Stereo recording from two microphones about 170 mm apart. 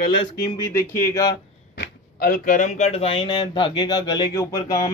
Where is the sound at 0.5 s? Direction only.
15° left (ahead or behind).